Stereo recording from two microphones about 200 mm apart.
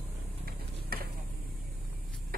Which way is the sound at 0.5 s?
50° right (ahead or behind).